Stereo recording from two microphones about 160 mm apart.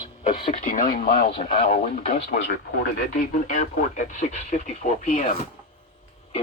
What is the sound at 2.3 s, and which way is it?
Speech, 65° left (ahead or behind).